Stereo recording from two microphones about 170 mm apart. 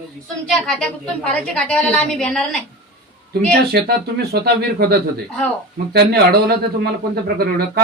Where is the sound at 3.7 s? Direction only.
65° right (ahead or behind).